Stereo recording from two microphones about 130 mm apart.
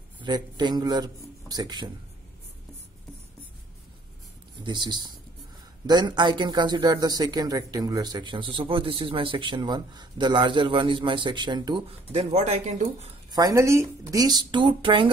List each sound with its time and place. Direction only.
0.2 s a man's voice: 35° right (ahead or behind)
4.6 s a man's voice: 35° right (ahead or behind)
12.1 s a man's voice: 55° right (ahead or behind)
13.3 s a man's voice: 25° right (ahead or behind)